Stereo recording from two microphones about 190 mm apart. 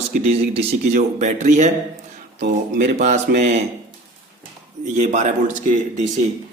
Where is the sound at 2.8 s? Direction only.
40° right (ahead or behind).